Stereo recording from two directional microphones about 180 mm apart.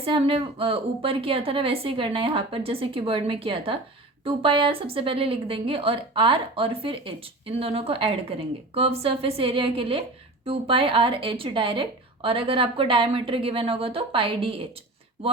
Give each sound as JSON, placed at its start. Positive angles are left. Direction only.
{"t": 0.0, "sound": "a woman's voice", "side_deg": -30}